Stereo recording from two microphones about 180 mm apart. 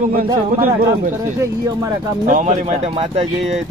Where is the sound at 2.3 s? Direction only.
45° right (ahead or behind).